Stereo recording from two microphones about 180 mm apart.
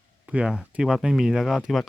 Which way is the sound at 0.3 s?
5° right (ahead or behind).